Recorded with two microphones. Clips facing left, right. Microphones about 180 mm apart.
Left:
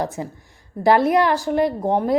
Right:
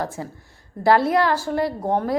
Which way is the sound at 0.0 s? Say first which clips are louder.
Left 3 dB; 15° left (ahead or behind).